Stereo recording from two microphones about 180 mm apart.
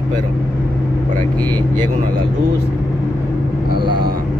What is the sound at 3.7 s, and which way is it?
Speech, 60° right (ahead or behind).